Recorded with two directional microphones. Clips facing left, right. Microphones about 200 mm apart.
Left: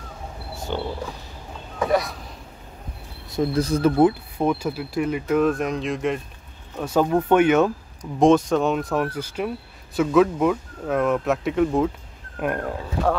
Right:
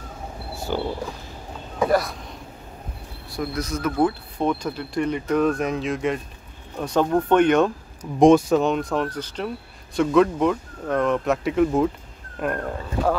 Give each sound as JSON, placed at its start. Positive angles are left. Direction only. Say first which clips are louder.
{"t": 0.7, "sound": "pig", "louder": "right 2 dB", "side_deg": -5}
{"t": 1.9, "sound": "speech", "louder": "even", "side_deg": 0}
{"t": 3.3, "sound": "speech", "louder": "left 6 dB", "side_deg": 25}
{"t": 4.0, "sound": "speech", "louder": "left 3 dB", "side_deg": 10}
{"t": 8.2, "sound": "speech", "louder": "right 2 dB", "side_deg": -10}